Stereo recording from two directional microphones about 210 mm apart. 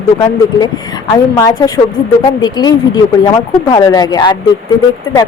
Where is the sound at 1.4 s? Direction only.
15° left (ahead or behind).